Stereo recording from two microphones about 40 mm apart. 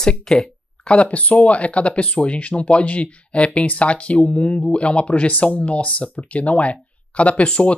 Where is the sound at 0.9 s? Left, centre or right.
Left.